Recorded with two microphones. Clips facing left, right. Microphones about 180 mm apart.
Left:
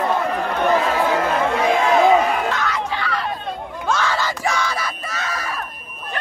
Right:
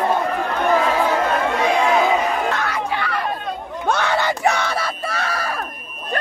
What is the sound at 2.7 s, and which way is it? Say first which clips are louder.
Chatter: right 1 dB; 60° right (ahead or behind).